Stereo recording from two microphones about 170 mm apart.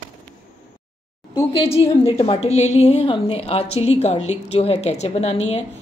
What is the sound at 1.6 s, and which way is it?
A woman's voice, 35° left (ahead or behind).